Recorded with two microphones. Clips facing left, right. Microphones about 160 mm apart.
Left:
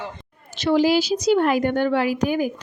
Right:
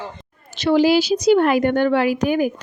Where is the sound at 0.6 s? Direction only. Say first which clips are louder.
Right 3 dB; 70° right (ahead or behind).